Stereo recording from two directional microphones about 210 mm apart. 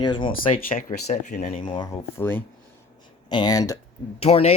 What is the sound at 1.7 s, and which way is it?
Speech, 20° left (ahead or behind).